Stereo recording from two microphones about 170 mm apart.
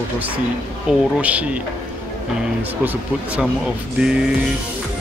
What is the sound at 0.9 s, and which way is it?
Music, 5° right (ahead or behind).